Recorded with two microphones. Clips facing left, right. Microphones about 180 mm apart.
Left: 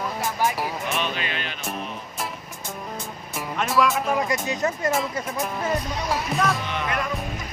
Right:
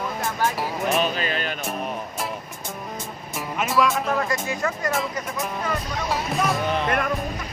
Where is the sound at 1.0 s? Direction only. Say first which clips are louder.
Right 4 dB; 40° right (ahead or behind).